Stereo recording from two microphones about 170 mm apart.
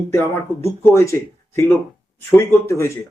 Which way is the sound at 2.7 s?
15° left (ahead or behind).